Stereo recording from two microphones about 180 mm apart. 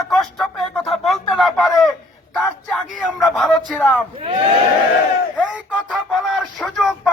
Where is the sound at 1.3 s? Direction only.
Centre (ahead or behind).